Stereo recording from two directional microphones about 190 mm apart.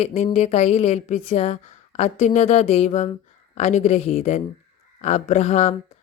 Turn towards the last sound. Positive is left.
turn(degrees=35)  # may be behind; listen again after turning